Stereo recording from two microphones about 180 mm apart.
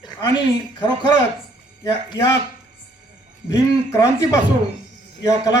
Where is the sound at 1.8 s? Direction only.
20° left (ahead or behind).